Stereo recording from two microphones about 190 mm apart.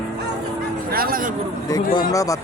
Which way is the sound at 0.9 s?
50° right (ahead or behind).